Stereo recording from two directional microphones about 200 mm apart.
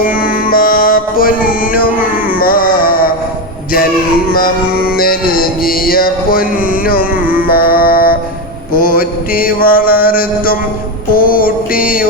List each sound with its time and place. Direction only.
0.0 s music: 45° left (ahead or behind)
4.3 s music: 45° left (ahead or behind)